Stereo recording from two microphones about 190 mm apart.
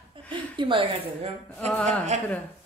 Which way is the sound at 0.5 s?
25° right (ahead or behind).